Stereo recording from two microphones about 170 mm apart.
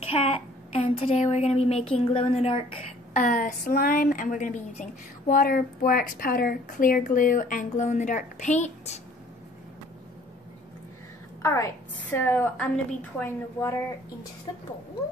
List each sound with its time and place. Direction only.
0.0 s a woman's voice: 35° left (ahead or behind)
3.1 s a woman's voice: 50° left (ahead or behind)
11.4 s a woman's voice: 15° left (ahead or behind)